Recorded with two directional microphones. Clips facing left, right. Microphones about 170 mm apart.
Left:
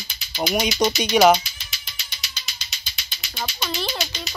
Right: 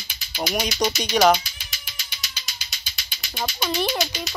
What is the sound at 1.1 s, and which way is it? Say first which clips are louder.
Speech: left 2 dB; 5° left (ahead or behind).